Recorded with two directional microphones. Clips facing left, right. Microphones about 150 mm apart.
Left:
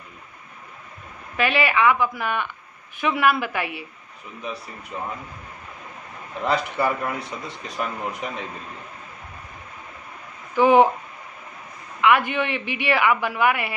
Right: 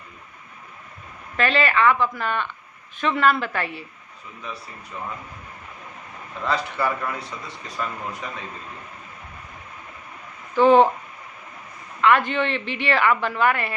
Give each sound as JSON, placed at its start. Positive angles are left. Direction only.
{"t": 1.3, "sound": "a woman's voice", "side_deg": 10}
{"t": 6.4, "sound": "speech", "side_deg": 15}
{"t": 10.5, "sound": "speech", "side_deg": 10}
{"t": 12.0, "sound": "a woman's voice", "side_deg": 10}